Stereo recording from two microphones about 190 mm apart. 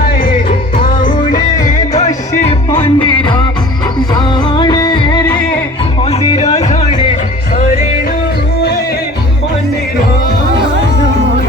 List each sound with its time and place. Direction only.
0.3 s music: 25° left (ahead or behind)
1.6 s music: 40° left (ahead or behind)
2.8 s music: 25° left (ahead or behind)